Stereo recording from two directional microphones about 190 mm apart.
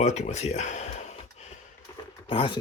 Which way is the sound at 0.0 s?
35° left (ahead or behind).